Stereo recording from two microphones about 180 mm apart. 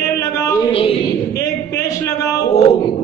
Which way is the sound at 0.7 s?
35° left (ahead or behind).